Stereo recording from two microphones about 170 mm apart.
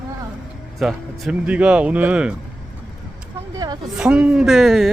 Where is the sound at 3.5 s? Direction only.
25° right (ahead or behind).